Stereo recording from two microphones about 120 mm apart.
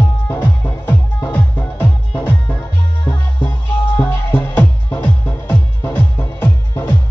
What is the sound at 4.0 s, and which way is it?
Music, 15° left (ahead or behind).